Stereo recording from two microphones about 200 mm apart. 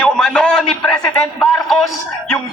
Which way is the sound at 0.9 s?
20° left (ahead or behind).